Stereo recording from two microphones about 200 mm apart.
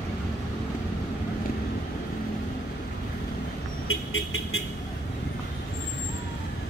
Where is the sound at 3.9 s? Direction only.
90° left.